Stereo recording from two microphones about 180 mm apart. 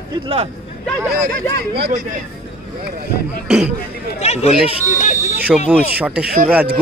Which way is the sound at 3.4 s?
5° right (ahead or behind).